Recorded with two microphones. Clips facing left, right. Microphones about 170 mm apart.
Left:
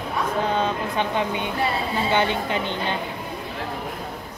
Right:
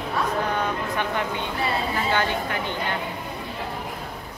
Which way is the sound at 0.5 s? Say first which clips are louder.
Left 2 dB; 20° left (ahead or behind).